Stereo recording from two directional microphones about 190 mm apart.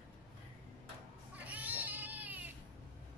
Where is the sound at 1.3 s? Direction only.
10° right (ahead or behind).